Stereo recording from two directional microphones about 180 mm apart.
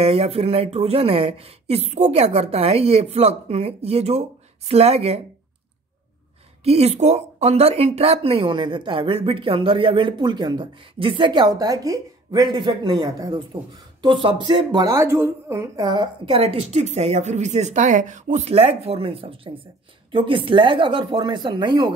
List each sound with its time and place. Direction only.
0.0 s speech: 35° right (ahead or behind)
6.6 s speech: 35° right (ahead or behind)